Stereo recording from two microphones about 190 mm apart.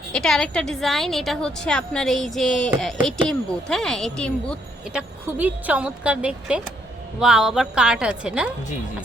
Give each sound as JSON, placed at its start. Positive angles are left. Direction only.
{"t": 0.1, "sound": "a woman's voice", "side_deg": 5}
{"t": 4.9, "sound": "a woman's voice", "side_deg": -10}